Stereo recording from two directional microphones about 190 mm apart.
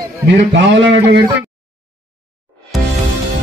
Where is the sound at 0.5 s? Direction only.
70° right (ahead or behind).